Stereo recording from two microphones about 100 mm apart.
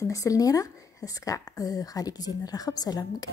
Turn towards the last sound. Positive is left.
turn(degrees=40)  # may be behind; listen again after turning